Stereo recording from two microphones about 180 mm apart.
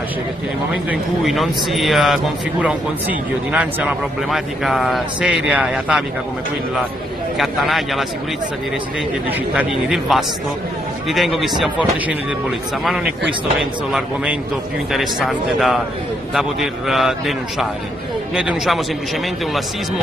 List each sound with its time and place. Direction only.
0.8 s a man's voice: centre (ahead or behind)
7.3 s a man's voice: centre (ahead or behind)
9.6 s a man's voice: centre (ahead or behind)